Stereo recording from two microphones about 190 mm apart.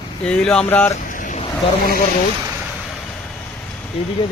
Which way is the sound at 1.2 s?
40° left (ahead or behind).